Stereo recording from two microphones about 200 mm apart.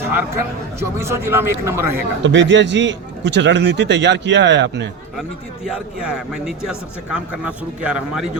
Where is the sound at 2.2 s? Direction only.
65° right (ahead or behind).